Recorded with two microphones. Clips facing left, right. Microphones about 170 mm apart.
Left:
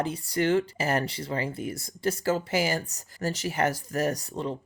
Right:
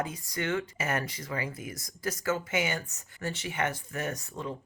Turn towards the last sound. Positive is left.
turn(degrees=30)  # may be behind; listen again after turning